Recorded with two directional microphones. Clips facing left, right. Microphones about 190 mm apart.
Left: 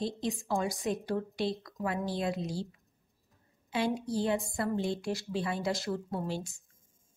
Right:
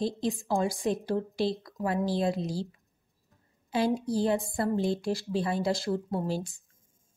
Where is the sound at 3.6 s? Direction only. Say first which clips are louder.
Right 4 dB; 35° right (ahead or behind).